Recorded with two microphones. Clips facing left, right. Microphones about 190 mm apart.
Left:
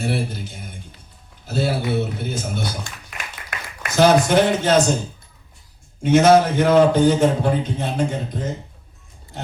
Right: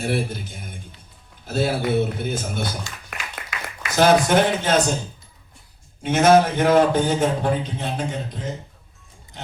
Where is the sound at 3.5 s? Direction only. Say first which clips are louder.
Even; 55° left (ahead or behind).